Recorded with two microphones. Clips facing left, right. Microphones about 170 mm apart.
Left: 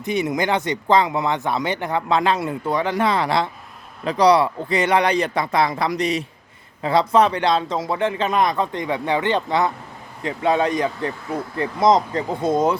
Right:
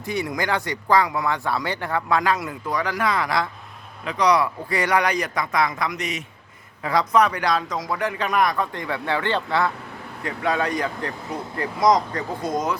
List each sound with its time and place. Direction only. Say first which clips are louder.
0.0 s speech: left 4 dB; 20° left (ahead or behind)